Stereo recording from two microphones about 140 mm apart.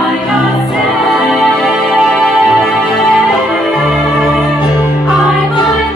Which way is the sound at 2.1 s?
Centre (ahead or behind).